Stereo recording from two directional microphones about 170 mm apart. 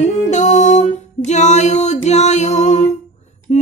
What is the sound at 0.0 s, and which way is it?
Music, 45° left (ahead or behind).